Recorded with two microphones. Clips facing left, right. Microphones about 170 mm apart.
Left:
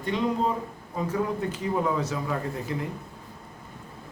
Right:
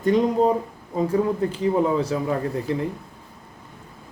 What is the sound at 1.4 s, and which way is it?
Speech, 30° right (ahead or behind).